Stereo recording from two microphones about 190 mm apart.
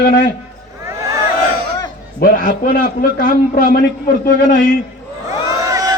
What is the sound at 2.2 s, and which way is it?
A man's voice, 50° left (ahead or behind).